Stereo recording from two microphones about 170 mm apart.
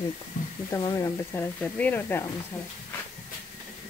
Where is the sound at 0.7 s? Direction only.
20° left (ahead or behind).